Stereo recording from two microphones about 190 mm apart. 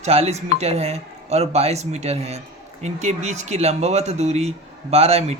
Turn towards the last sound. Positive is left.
turn(degrees=-35)  # may be behind; listen again after turning